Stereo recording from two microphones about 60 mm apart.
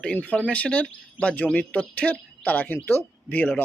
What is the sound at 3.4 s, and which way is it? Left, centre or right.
Speech, left.